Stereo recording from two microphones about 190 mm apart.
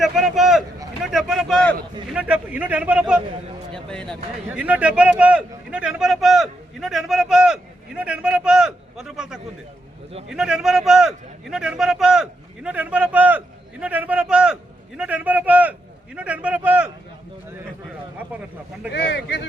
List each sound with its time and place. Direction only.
0.0 s a sound: centre (ahead or behind)
1.0 s speech: centre (ahead or behind)
4.5 s a man's voice: 10° right (ahead or behind)
18.9 s speech: 60° left (ahead or behind)